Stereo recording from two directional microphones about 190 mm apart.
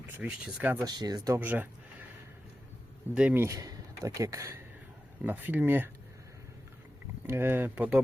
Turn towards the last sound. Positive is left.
turn(degrees=-5)  # may be behind; listen again after turning